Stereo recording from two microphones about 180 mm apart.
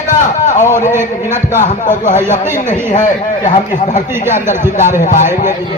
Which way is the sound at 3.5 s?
35° left (ahead or behind).